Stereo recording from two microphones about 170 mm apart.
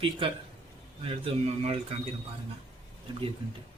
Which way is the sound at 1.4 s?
40° right (ahead or behind).